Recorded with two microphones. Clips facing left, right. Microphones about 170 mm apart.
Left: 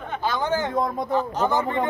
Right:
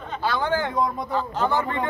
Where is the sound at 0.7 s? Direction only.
50° left (ahead or behind).